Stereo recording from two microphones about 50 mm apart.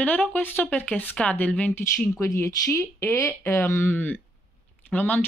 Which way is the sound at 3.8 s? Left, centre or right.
Left.